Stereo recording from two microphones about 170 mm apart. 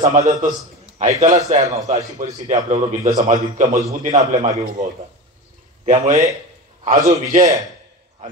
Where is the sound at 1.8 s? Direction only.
40° right (ahead or behind).